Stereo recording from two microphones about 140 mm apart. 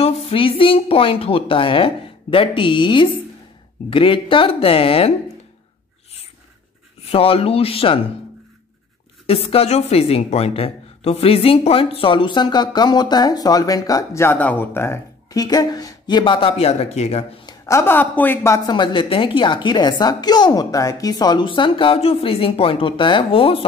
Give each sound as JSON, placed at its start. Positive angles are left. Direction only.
{"t": 0.0, "sound": "a woman's voice", "side_deg": 40}
{"t": 7.1, "sound": "speech", "side_deg": 45}
{"t": 9.2, "sound": "a woman's voice", "side_deg": 45}
{"t": 15.4, "sound": "a woman's voice", "side_deg": 30}
{"t": 17.5, "sound": "a woman's voice", "side_deg": 20}
{"t": 18.7, "sound": "a woman's voice", "side_deg": 35}